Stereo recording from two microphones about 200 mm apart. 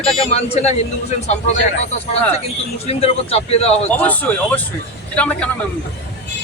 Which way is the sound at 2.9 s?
30° left (ahead or behind).